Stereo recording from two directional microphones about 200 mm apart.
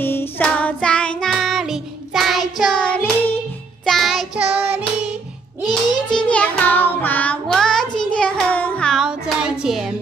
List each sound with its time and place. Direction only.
0.0 s child singing: 10° left (ahead or behind); by 4.8 s 5° right (ahead or behind)
5.7 s child singing: 20° left (ahead or behind)
6.2 s music: 5° left (ahead or behind)